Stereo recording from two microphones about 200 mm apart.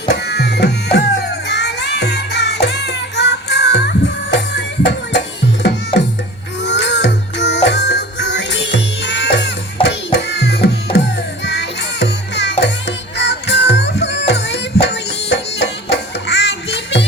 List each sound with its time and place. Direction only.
0.1 s music: 55° left (ahead or behind)
5.9 s music: 25° left (ahead or behind)
6.6 s music: 60° left (ahead or behind)